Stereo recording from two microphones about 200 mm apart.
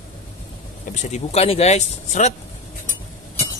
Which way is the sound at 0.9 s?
35° left (ahead or behind).